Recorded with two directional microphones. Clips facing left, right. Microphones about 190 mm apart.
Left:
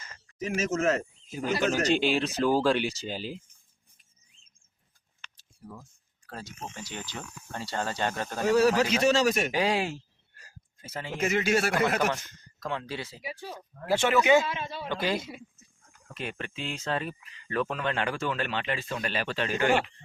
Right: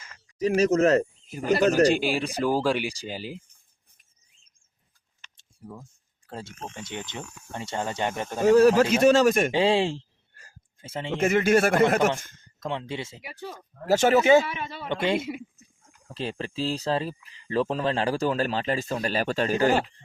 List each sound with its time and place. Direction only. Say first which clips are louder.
0.3 s speech: right 8 dB; 35° right (ahead or behind)
1.9 s speech: right 1 dB; 10° right (ahead or behind)
5.4 s a sound: right 3 dB; 25° right (ahead or behind)
6.2 s speech: right 3 dB; 25° right (ahead or behind)
8.4 s a man's voice: right 6 dB; 50° right (ahead or behind)
9.5 s speech: right 5 dB; 25° right (ahead or behind)
11.2 s a man's voice: right 5 dB; 50° right (ahead or behind)
12.5 s speech: right 3 dB; 20° right (ahead or behind)
13.2 s a man's voice: even; 55° right (ahead or behind); by 14.4 s 35° right (ahead or behind)
14.4 s speech: even; 60° right (ahead or behind)
14.8 s speech: right 5 dB; 25° right (ahead or behind)
15.3 s a sound: right 9 dB; 15° right (ahead or behind)
16.0 s speech: right 5 dB; 30° right (ahead or behind)